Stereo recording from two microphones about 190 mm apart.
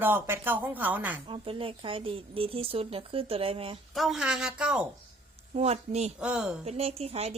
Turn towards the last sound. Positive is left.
turn(degrees=-35)  # may be behind; listen again after turning